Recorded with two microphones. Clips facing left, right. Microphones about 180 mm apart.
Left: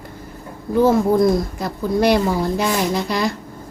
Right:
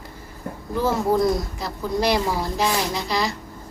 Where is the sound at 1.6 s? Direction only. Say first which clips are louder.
Left 5 dB; 55° left (ahead or behind).